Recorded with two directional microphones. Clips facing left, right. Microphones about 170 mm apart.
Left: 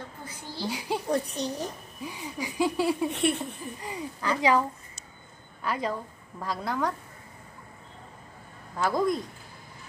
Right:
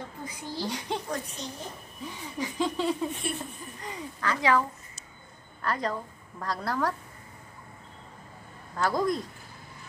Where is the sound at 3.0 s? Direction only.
75° left (ahead or behind).